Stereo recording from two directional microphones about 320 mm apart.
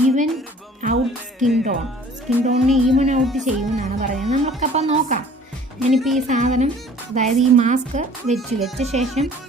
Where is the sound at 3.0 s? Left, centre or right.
Right.